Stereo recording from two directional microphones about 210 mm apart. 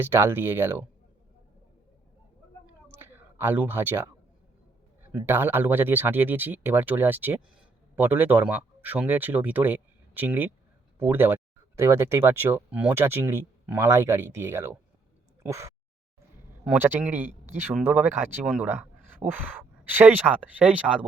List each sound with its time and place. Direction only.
0.0 s speech: 10° right (ahead or behind)
2.9 s a sound: 10° right (ahead or behind)
5.1 s speech: 10° right (ahead or behind)